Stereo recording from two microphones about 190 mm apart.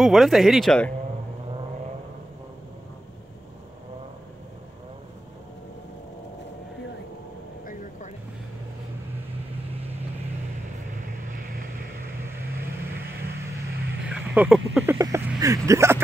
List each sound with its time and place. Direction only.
0.0 s speech: centre (ahead or behind)
11.2 s vehicle: 45° right (ahead or behind)
14.0 s speech: 5° right (ahead or behind)